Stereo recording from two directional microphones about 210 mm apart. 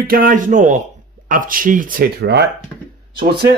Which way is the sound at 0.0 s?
45° right (ahead or behind).